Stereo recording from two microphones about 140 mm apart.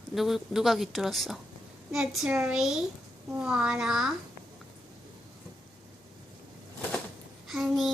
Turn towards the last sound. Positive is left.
turn(degrees=0)  # may be behind; listen again after turning